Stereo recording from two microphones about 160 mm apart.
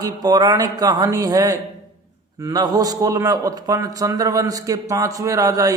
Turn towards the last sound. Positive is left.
turn(degrees=-20)  # may be behind; listen again after turning